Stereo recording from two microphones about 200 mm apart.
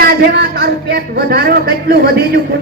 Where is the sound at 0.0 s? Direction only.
50° right (ahead or behind).